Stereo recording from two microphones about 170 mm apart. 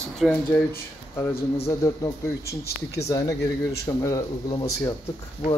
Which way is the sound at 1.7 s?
20° left (ahead or behind).